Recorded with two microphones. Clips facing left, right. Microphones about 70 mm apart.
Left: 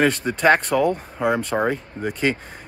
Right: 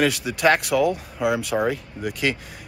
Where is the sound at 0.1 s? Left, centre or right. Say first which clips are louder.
Left 3 dB; left.